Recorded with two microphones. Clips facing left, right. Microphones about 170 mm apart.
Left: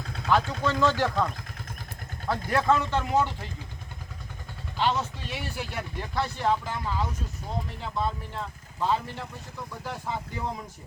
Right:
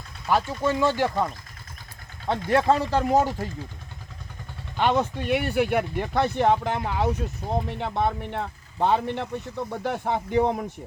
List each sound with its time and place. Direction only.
0.3 s speech: 10° right (ahead or behind)
2.2 s speech: 25° right (ahead or behind)
4.8 s speech: 55° right (ahead or behind)